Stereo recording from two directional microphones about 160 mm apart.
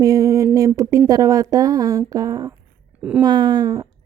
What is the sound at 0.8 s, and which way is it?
Speech, 20° right (ahead or behind).